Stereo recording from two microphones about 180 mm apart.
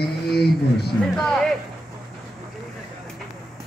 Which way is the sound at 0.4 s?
65° left (ahead or behind).